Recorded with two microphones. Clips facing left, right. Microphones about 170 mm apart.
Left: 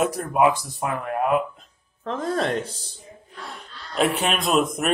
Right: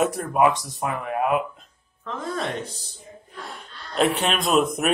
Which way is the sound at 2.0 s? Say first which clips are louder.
Left 4 dB; 45° left (ahead or behind).